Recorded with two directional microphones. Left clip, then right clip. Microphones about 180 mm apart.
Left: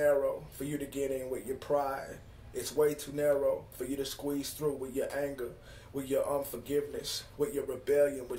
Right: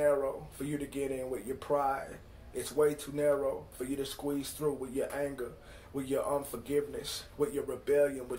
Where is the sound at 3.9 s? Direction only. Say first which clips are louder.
Even; 15° left (ahead or behind).